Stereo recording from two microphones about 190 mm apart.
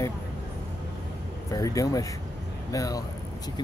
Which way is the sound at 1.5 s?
20° left (ahead or behind).